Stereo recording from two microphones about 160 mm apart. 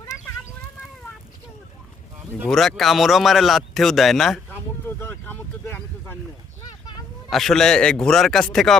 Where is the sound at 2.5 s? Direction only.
Centre (ahead or behind).